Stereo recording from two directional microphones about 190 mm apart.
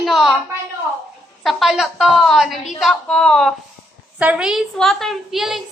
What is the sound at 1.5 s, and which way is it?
A woman's voice, centre (ahead or behind).